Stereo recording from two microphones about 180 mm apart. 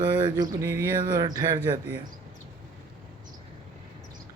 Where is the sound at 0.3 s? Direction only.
20° right (ahead or behind).